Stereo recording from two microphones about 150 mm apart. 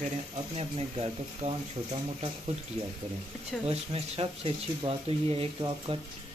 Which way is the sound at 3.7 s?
40° right (ahead or behind).